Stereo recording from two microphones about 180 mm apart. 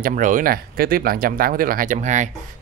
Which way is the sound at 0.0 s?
45° right (ahead or behind).